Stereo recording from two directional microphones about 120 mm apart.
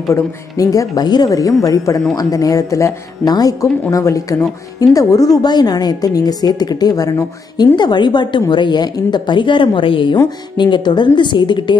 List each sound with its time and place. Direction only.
0.1 s a woman's voice: 30° left (ahead or behind)